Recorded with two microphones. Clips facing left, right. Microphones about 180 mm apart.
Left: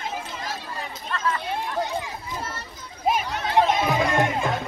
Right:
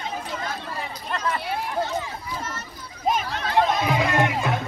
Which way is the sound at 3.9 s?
20° left (ahead or behind).